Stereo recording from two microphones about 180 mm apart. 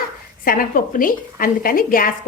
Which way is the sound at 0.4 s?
50° left (ahead or behind).